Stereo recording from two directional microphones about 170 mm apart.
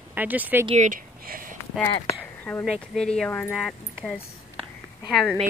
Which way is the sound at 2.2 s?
5° left (ahead or behind).